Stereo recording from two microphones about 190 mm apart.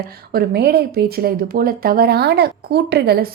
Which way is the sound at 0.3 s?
55° right (ahead or behind).